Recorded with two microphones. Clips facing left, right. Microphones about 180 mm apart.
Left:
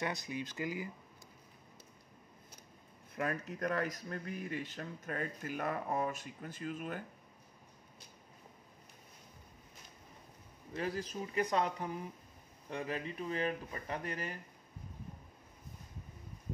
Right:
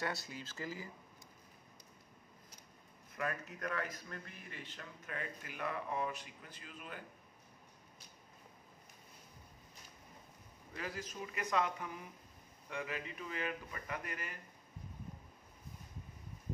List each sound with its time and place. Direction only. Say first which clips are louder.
0.0 s speech: left 3 dB; 15° left (ahead or behind)
3.2 s speech: left 4 dB; 35° left (ahead or behind)
10.7 s speech: left 6 dB; 30° left (ahead or behind)